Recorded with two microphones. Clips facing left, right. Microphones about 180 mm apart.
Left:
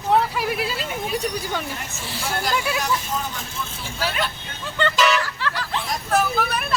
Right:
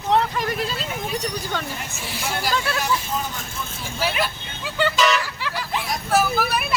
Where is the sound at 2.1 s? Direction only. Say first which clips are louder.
Even; 15° right (ahead or behind).